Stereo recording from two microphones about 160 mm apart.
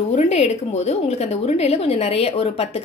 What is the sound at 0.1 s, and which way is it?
A woman's voice, 50° left (ahead or behind).